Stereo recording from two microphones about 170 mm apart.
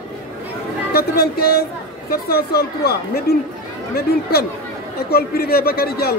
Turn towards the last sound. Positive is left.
turn(degrees=65)  # may be behind; listen again after turning